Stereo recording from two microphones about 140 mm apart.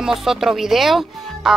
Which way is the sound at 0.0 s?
Centre (ahead or behind).